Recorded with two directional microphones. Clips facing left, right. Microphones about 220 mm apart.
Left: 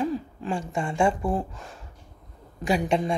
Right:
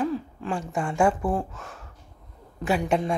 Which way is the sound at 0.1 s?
5° left (ahead or behind).